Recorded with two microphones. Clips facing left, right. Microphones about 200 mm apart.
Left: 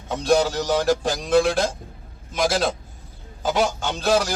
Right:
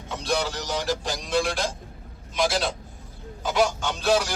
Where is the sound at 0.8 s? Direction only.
50° left (ahead or behind).